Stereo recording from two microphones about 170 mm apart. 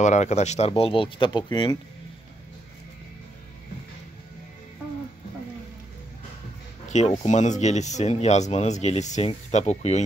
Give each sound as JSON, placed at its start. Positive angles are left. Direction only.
{"t": 0.0, "sound": "speech", "side_deg": 45}
{"t": 6.9, "sound": "speech", "side_deg": 45}